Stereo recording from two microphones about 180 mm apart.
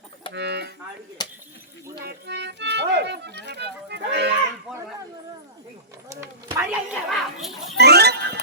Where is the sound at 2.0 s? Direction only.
70° right (ahead or behind).